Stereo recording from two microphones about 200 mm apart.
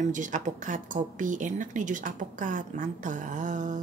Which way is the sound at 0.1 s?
40° right (ahead or behind).